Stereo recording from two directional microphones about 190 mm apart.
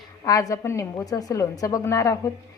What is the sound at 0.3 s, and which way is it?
A woman's voice, 20° left (ahead or behind).